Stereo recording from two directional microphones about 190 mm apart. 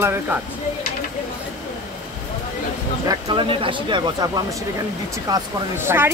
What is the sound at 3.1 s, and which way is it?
Speech, 20° right (ahead or behind).